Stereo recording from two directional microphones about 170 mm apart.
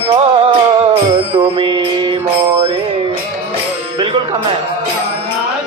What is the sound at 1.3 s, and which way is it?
Music, 30° right (ahead or behind).